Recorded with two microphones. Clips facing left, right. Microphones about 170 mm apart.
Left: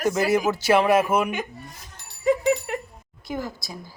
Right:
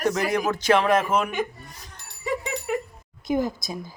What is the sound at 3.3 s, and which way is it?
Speech, 20° right (ahead or behind).